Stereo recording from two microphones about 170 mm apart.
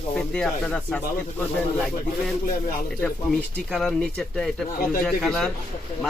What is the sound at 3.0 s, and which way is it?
Speech, 5° left (ahead or behind).